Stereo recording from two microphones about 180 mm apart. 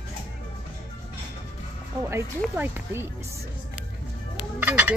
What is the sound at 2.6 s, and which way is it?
Speech, 10° right (ahead or behind).